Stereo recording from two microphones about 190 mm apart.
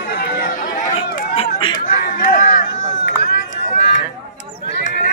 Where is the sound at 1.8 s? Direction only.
45° left (ahead or behind).